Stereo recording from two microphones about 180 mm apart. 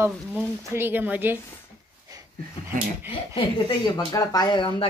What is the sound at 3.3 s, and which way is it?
Speech, 25° left (ahead or behind).